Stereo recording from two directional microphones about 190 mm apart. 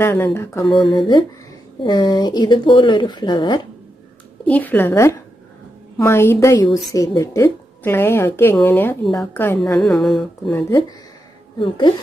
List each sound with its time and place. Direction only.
0.0 s a woman's voice: 10° left (ahead or behind)
0.7 s speech: 25° left (ahead or behind)
4.5 s a woman's voice: 10° left (ahead or behind)
9.6 s speech: centre (ahead or behind)
11.5 s a woman's voice: 25° left (ahead or behind)